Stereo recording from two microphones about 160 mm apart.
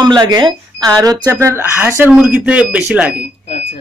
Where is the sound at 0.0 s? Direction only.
25° right (ahead or behind); by 3.2 s 10° right (ahead or behind).